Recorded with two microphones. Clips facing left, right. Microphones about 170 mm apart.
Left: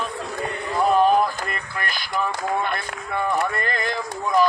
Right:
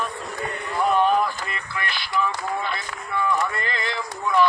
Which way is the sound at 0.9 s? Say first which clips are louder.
Left 2 dB; 40° left (ahead or behind).